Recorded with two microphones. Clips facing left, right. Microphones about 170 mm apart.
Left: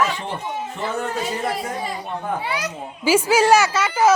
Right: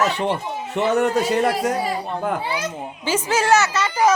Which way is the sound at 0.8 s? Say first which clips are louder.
Right 9 dB; 75° right (ahead or behind).